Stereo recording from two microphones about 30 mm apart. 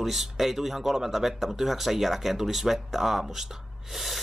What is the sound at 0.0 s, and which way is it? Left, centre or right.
Speech, centre.